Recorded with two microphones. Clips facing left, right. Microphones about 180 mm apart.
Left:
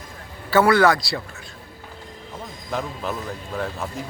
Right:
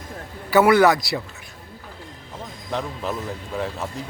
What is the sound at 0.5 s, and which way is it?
Speech, 20° right (ahead or behind).